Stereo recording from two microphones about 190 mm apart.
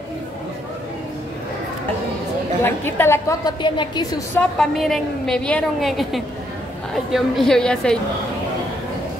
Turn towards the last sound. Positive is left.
turn(degrees=5)  # may be behind; listen again after turning